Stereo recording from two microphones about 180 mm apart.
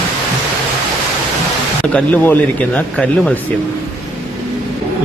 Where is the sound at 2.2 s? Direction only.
10° left (ahead or behind).